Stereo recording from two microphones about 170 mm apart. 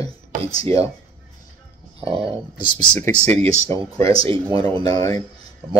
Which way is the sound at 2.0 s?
35° right (ahead or behind).